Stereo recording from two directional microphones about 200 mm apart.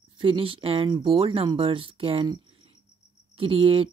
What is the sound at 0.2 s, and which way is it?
Speech, 25° right (ahead or behind).